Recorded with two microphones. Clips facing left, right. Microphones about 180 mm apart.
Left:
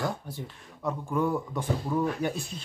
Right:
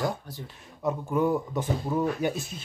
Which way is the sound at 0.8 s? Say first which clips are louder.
Right 3 dB; 20° right (ahead or behind).